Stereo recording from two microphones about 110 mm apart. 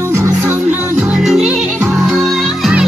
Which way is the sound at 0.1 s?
25° right (ahead or behind).